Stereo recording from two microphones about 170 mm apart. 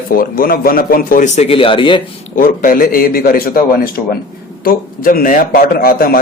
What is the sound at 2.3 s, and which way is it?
A man's voice, 55° left (ahead or behind).